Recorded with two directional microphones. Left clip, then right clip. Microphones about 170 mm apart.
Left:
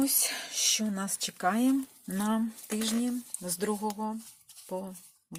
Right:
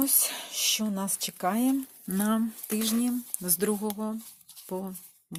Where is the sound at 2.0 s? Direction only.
35° right (ahead or behind); by 4.2 s 55° right (ahead or behind).